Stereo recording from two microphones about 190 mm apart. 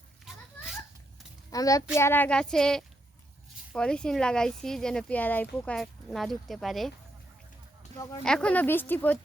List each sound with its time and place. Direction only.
0.3 s children playing: centre (ahead or behind)
1.5 s a child's voice: 20° left (ahead or behind); by 6.9 s centre (ahead or behind)
8.2 s speech: 5° left (ahead or behind)